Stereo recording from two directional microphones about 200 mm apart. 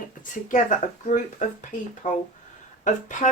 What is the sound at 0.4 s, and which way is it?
Speech, 40° left (ahead or behind).